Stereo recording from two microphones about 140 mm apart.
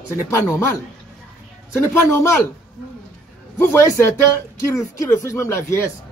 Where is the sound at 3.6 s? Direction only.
20° left (ahead or behind).